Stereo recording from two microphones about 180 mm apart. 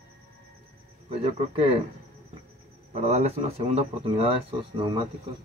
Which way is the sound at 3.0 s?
35° right (ahead or behind).